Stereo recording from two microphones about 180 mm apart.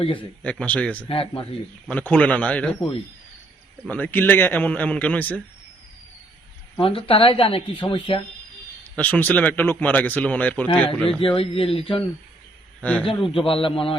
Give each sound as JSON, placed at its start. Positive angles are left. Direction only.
{"t": 0.0, "sound": "a man's voice", "side_deg": 30}
{"t": 0.4, "sound": "speech", "side_deg": 5}
{"t": 1.0, "sound": "speech", "side_deg": 30}
{"t": 1.9, "sound": "speech", "side_deg": 10}
{"t": 6.7, "sound": "speech", "side_deg": 30}
{"t": 8.8, "sound": "speech", "side_deg": 10}
{"t": 11.3, "sound": "speech", "side_deg": 30}
{"t": 12.8, "sound": "a man's voice", "side_deg": 10}
{"t": 13.3, "sound": "speech", "side_deg": 30}